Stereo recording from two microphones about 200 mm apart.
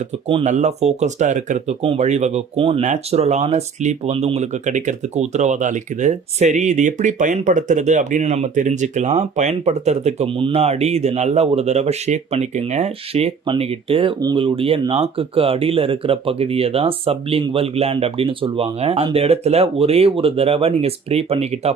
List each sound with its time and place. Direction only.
0.3 s speech: 30° right (ahead or behind)